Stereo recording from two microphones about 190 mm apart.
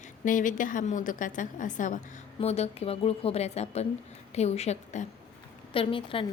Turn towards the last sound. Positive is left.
turn(degrees=30)  # may be behind; listen again after turning